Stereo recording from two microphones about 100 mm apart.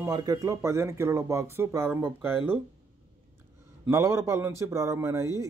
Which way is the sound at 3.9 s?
30° right (ahead or behind).